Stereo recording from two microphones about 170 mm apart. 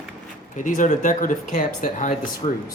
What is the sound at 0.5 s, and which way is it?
Speech, 50° left (ahead or behind).